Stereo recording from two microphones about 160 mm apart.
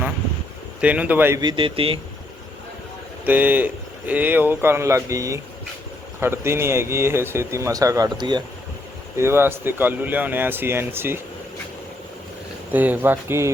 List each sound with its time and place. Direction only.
0.8 s speech: 10° right (ahead or behind)
1.4 s speech: 30° right (ahead or behind)
3.2 s speech: 10° right (ahead or behind); by 8.4 s 25° right (ahead or behind)
9.1 s speech: 15° right (ahead or behind)
12.7 s speech: 10° right (ahead or behind)